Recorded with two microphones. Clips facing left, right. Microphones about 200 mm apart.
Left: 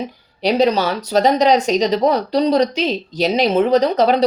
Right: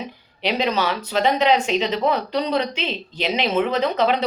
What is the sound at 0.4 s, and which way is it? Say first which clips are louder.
Speech: left 6 dB; 40° left (ahead or behind).